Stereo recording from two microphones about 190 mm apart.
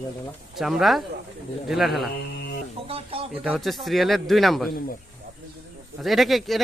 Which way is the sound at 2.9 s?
30° right (ahead or behind).